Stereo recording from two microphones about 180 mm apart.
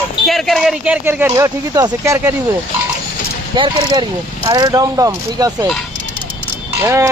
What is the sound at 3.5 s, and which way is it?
Speech, 25° right (ahead or behind).